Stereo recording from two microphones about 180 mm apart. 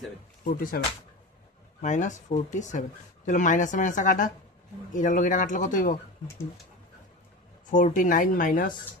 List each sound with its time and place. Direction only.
0.4 s a woman's voice: 50° left (ahead or behind)
1.8 s a woman's voice: 40° left (ahead or behind)
7.7 s a woman's voice: 45° left (ahead or behind)